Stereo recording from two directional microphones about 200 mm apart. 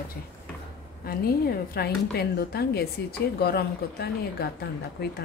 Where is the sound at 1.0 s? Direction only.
50° left (ahead or behind).